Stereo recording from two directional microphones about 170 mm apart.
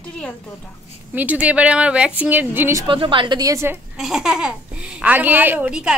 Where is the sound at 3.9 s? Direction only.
5° right (ahead or behind).